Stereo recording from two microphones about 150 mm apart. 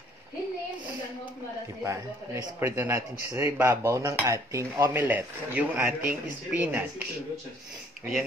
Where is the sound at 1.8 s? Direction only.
20° right (ahead or behind).